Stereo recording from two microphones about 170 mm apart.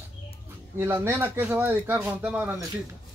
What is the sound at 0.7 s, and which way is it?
Speech, 15° right (ahead or behind).